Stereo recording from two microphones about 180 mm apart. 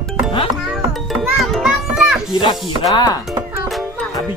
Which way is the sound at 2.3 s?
25° left (ahead or behind).